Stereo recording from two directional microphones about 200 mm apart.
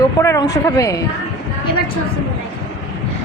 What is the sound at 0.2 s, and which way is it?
Speech, 15° left (ahead or behind).